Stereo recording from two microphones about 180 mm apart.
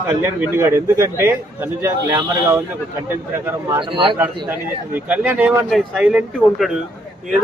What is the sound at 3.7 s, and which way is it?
Speech, 25° right (ahead or behind).